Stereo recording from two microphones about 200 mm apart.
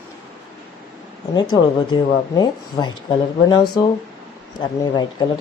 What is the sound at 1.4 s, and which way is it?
Speech, 20° left (ahead or behind).